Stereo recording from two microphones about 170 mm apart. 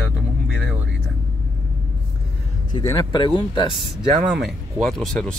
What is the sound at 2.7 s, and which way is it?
Speech, 20° left (ahead or behind).